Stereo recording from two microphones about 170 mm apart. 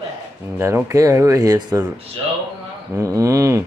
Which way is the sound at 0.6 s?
15° right (ahead or behind).